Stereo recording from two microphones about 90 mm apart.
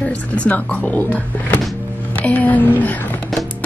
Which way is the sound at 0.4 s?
15° left (ahead or behind).